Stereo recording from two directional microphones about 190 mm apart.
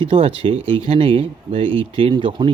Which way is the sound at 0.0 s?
30° right (ahead or behind).